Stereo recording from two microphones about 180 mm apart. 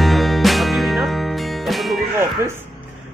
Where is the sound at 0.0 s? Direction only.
Centre (ahead or behind).